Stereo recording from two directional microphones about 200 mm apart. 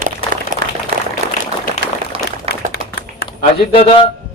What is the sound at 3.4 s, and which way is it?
Speech, 30° left (ahead or behind).